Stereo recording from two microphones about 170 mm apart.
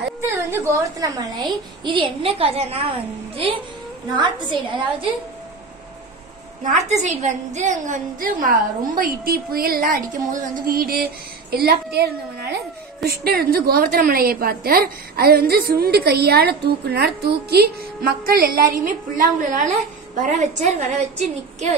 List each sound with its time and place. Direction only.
0.4 s a woman's voice: 15° right (ahead or behind)
6.9 s a woman's voice: 40° right (ahead or behind)